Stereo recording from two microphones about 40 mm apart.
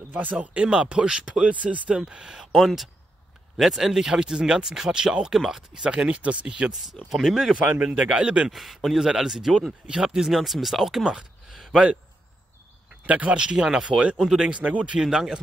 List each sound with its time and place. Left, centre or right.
0.1 s speech: right
2.0 s speech: right
2.5 s speech: centre
5.8 s speech: right
7.2 s speech: centre
7.8 s speech: right
8.5 s a man's voice: centre
13.0 s speech: right
13.4 s speech: centre
14.5 s speech: right
15.0 s speech: centre